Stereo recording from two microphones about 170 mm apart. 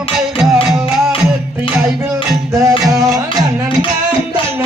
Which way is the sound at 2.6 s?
20° right (ahead or behind).